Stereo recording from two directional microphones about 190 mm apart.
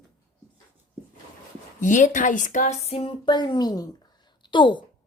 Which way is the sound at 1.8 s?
40° left (ahead or behind).